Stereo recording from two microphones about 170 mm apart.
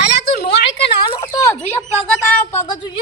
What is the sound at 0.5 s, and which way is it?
Speech, 90° left.